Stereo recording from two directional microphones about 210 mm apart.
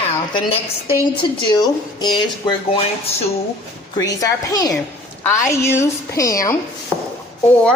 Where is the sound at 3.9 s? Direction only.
15° left (ahead or behind).